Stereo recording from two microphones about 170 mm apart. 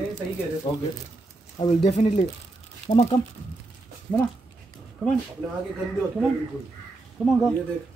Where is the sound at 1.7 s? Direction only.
40° left (ahead or behind).